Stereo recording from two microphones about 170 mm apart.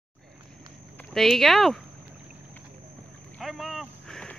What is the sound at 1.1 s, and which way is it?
Speech, centre (ahead or behind).